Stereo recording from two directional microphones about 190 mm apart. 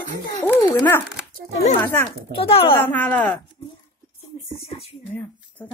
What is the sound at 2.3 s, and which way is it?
Speech, 30° left (ahead or behind).